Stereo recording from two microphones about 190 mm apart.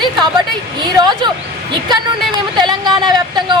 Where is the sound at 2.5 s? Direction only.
25° right (ahead or behind).